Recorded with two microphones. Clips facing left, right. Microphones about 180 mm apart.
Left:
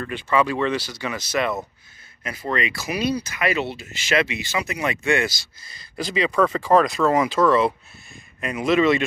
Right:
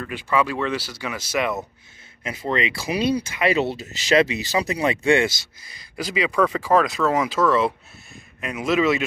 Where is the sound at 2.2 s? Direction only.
25° right (ahead or behind).